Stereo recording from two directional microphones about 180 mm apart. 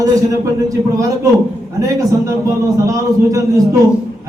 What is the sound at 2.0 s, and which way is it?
A man's voice, 15° right (ahead or behind).